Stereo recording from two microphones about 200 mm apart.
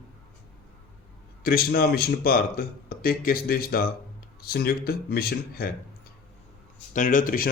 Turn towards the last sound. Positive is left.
turn(degrees=45)  # may be behind; listen again after turning